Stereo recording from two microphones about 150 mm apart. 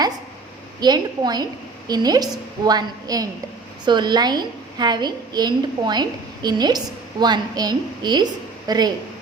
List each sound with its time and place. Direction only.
0.8 s a woman's voice: 30° right (ahead or behind)